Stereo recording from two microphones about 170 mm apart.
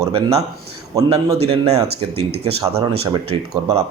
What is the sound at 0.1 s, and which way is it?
Speech, 35° right (ahead or behind).